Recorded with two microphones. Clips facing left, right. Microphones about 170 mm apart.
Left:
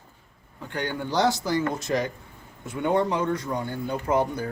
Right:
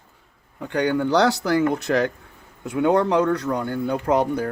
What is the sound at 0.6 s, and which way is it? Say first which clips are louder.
A man's voice: right 9 dB; 70° right (ahead or behind).